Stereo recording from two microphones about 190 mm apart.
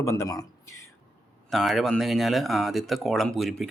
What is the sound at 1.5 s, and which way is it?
Speech, centre (ahead or behind).